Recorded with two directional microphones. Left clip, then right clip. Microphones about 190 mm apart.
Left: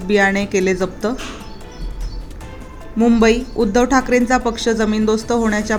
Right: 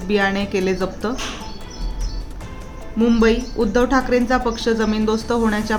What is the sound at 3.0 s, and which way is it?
Speech, 25° left (ahead or behind).